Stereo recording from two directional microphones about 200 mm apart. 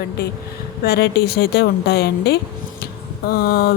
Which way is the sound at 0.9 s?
55° left (ahead or behind).